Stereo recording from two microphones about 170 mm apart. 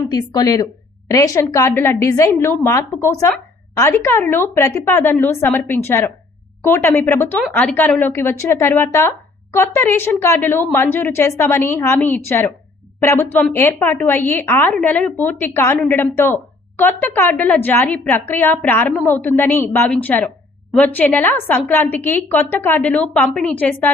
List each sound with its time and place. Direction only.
0.1 s a woman's voice: 20° left (ahead or behind)